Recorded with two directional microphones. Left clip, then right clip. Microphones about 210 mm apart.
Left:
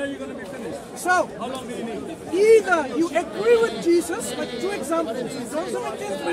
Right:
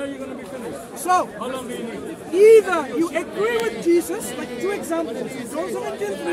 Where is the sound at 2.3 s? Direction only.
10° left (ahead or behind).